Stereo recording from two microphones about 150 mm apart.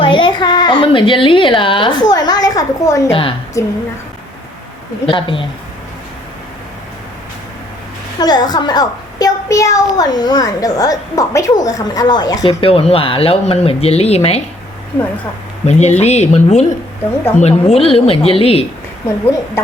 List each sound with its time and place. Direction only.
0.0 s a woman's voice: 35° left (ahead or behind)
3.1 s speech: 35° left (ahead or behind)
3.6 s a child's voice: 20° left (ahead or behind)
5.0 s speech: 35° left (ahead or behind)
8.2 s a child's voice: 25° left (ahead or behind)
12.5 s speech: 40° left (ahead or behind)
15.6 s speech: 45° left (ahead or behind)
19.0 s a woman's voice: 20° left (ahead or behind)